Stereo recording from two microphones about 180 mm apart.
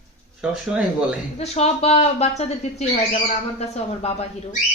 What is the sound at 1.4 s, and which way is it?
Speech, 35° left (ahead or behind).